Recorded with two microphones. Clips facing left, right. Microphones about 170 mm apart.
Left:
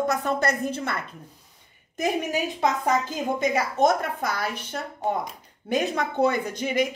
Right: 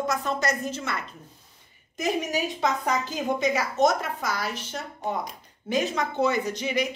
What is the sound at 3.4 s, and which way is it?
A woman's voice, 55° left (ahead or behind).